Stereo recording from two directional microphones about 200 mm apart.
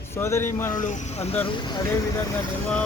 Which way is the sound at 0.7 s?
40° left (ahead or behind).